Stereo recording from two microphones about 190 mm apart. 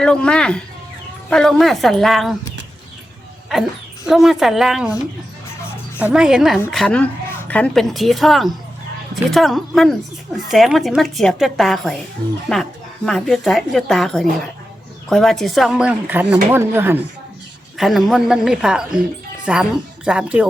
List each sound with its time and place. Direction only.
0.0 s a woman's voice: 5° left (ahead or behind)
4.0 s a woman's voice: centre (ahead or behind)
6.0 s a woman's voice: 5° right (ahead or behind)